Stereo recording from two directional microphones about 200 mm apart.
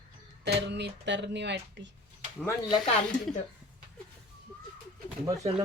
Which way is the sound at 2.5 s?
20° left (ahead or behind).